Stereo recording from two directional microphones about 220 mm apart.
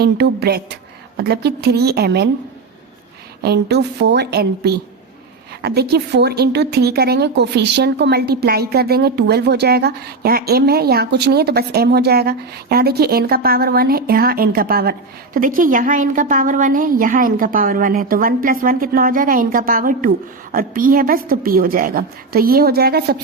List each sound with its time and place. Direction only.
0.0 s a woman's voice: 45° right (ahead or behind)
3.4 s a woman's voice: 50° right (ahead or behind)